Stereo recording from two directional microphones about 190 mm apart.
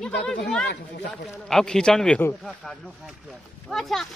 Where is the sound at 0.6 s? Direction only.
65° left (ahead or behind).